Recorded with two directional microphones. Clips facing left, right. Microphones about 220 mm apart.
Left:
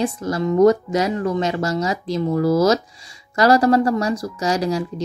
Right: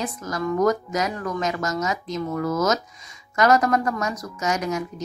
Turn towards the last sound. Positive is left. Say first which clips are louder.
# left 5 dB
turn(degrees=30)  # may be behind; listen again after turning